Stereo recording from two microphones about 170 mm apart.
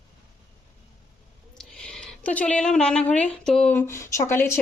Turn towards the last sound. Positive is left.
turn(degrees=15)  # may be behind; listen again after turning